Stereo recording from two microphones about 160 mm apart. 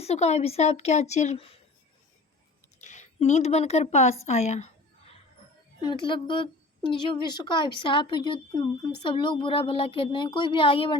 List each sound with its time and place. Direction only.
0.0 s speech: 40° left (ahead or behind)
2.8 s speech: 50° left (ahead or behind)
5.8 s a woman's voice: 30° left (ahead or behind)